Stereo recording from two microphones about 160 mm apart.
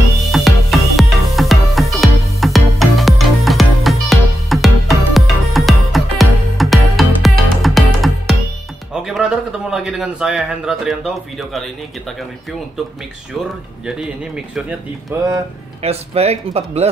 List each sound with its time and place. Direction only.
0.3 s music: centre (ahead or behind)
8.9 s a man's voice: 5° right (ahead or behind)
13.8 s speech: 5° right (ahead or behind)
15.8 s speech: 40° right (ahead or behind)